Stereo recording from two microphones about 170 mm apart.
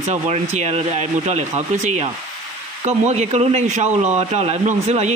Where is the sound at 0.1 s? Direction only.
40° right (ahead or behind).